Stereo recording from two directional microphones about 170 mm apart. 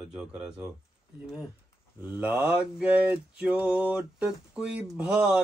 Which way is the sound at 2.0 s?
10° right (ahead or behind).